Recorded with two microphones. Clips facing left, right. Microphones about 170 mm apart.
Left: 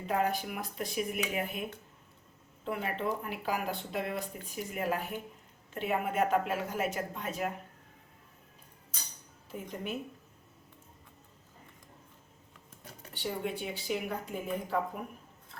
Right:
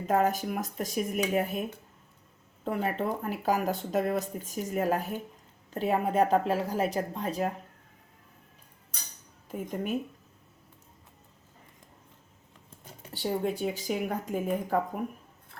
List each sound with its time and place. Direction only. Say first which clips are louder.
0.1 s speech: right 5 dB; 45° right (ahead or behind)
2.6 s speech: right 4 dB; 40° right (ahead or behind)
9.5 s speech: right 6 dB; 45° right (ahead or behind)
13.1 s speech: right 6 dB; 40° right (ahead or behind)